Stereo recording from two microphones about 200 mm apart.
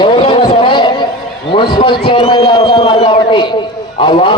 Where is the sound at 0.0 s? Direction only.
25° left (ahead or behind).